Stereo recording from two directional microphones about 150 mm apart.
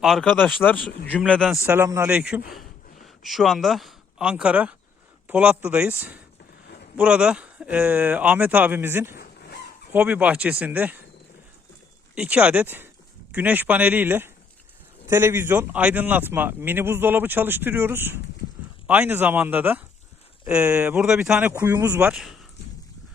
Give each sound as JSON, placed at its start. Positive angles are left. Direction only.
{"t": 0.0, "sound": "speech", "side_deg": 0}
{"t": 1.5, "sound": "speech", "side_deg": -15}
{"t": 2.0, "sound": "speech", "side_deg": -5}
{"t": 9.1, "sound": "a sound", "side_deg": 90}
{"t": 9.9, "sound": "speech", "side_deg": -10}
{"t": 12.1, "sound": "speech", "side_deg": -5}
{"t": 22.1, "sound": "speech", "side_deg": 0}